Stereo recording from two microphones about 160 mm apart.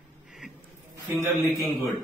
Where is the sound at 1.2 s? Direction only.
15° left (ahead or behind).